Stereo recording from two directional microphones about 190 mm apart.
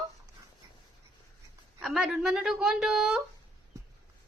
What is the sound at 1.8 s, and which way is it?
A woman's voice, centre (ahead or behind).